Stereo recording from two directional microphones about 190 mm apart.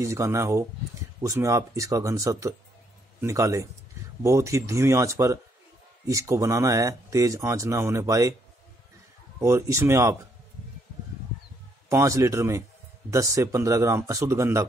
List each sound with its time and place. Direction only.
0.0 s speech: 15° right (ahead or behind)
9.4 s speech: 15° right (ahead or behind)
11.9 s speech: 15° right (ahead or behind)